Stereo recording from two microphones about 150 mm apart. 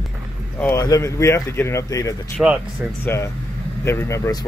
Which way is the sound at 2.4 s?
10° right (ahead or behind).